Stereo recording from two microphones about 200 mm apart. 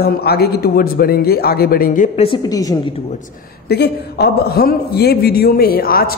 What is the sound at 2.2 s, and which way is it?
Speech, 20° left (ahead or behind).